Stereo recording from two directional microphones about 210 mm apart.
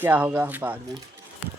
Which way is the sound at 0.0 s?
10° right (ahead or behind).